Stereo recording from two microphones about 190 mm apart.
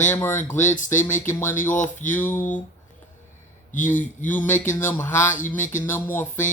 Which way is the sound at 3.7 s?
45° left (ahead or behind).